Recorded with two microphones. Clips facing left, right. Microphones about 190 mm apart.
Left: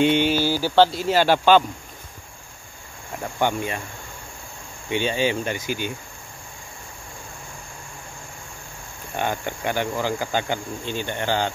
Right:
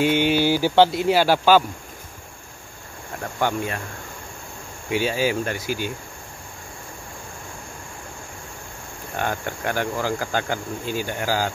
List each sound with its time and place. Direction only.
0.0 s speech: 10° right (ahead or behind)
3.2 s insect: centre (ahead or behind)
4.9 s insect: 5° right (ahead or behind)
9.1 s insect: centre (ahead or behind)